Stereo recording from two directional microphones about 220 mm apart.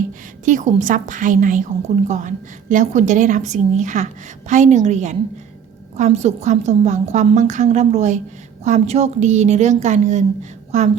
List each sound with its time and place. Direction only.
0.4 s a woman's voice: 35° right (ahead or behind)